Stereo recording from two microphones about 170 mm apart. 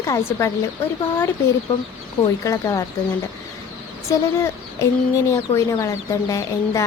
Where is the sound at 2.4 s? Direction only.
20° left (ahead or behind).